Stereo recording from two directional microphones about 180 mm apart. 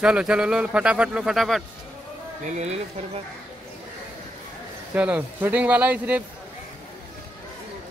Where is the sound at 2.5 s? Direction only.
35° right (ahead or behind).